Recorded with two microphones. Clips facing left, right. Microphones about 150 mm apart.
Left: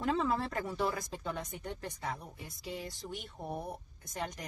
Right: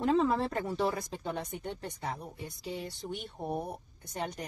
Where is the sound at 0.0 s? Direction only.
35° right (ahead or behind).